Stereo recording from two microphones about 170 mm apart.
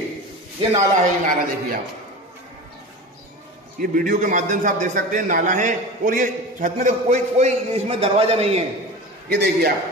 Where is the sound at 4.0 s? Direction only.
50° right (ahead or behind).